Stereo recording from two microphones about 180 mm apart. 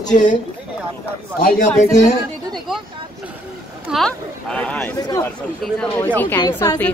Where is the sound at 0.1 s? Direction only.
45° left (ahead or behind).